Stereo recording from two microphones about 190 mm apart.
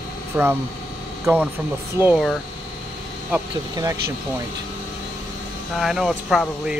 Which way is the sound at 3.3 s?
15° right (ahead or behind).